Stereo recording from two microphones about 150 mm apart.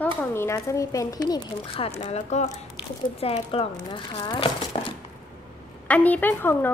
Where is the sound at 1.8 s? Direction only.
45° left (ahead or behind).